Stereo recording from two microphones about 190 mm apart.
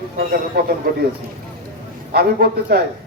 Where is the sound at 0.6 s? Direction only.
55° right (ahead or behind).